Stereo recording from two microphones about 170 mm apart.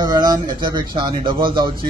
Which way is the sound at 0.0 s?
25° right (ahead or behind).